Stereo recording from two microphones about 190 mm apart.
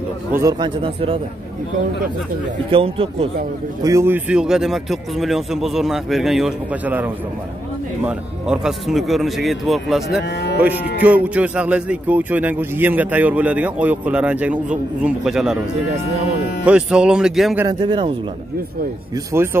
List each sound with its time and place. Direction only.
0.4 s speech: 20° right (ahead or behind)
2.7 s speech: 30° right (ahead or behind)
3.8 s speech: 15° right (ahead or behind)
10.2 s speech: 60° left (ahead or behind)
10.6 s speech: 10° right (ahead or behind)
16.6 s speech: 5° right (ahead or behind)
17.6 s speech: 25° right (ahead or behind)
19.3 s speech: 10° right (ahead or behind)